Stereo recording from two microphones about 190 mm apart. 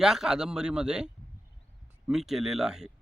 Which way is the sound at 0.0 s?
5° right (ahead or behind).